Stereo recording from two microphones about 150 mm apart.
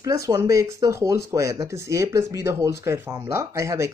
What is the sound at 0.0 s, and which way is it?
Speech, 20° right (ahead or behind).